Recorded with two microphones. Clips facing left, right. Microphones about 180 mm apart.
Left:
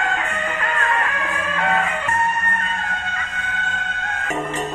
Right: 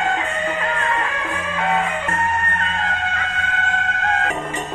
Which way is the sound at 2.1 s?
90° right.